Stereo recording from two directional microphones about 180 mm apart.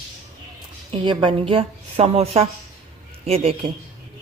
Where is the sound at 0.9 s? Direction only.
25° right (ahead or behind).